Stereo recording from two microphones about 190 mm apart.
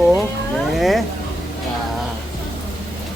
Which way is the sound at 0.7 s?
Centre (ahead or behind).